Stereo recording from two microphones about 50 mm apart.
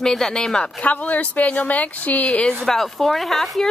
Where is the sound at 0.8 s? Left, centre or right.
Left.